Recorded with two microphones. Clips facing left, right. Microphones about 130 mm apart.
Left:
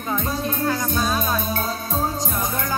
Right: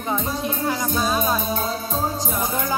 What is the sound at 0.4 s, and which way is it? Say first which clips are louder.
Music: left 1 dB; 15° right (ahead or behind).